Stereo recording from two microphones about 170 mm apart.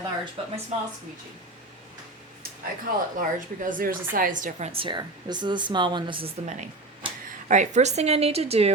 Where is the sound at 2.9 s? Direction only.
60° right (ahead or behind).